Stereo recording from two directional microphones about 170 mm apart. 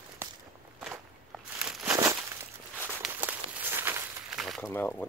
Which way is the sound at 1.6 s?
5° right (ahead or behind).